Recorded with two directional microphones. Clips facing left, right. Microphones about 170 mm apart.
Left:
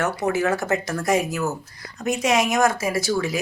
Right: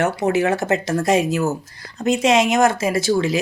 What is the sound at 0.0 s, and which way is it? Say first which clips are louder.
Speech: right 4 dB; 25° right (ahead or behind).